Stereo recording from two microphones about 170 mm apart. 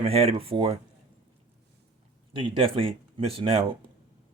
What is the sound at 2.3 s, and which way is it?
Speech, 30° right (ahead or behind).